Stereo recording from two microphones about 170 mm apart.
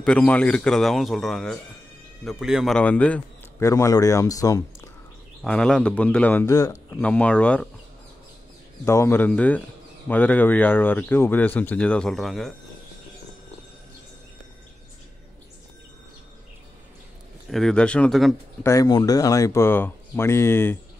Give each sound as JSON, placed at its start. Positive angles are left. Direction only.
{"t": 0.0, "sound": "a man's voice", "side_deg": 5}
{"t": 5.4, "sound": "a man's voice", "side_deg": 5}
{"t": 6.5, "sound": "speech", "side_deg": 20}
{"t": 7.0, "sound": "a man's voice", "side_deg": 10}
{"t": 8.8, "sound": "a man's voice", "side_deg": 15}
{"t": 17.5, "sound": "a man's voice", "side_deg": 5}
{"t": 18.6, "sound": "a man's voice", "side_deg": 20}